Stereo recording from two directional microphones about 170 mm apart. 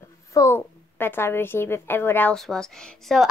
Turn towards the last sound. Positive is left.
turn(degrees=0)  # may be behind; listen again after turning